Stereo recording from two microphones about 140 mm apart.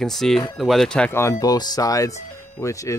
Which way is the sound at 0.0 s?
Centre (ahead or behind).